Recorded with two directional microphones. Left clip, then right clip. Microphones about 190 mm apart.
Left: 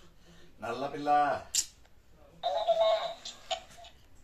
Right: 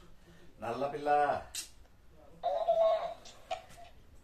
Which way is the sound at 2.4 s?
15° right (ahead or behind).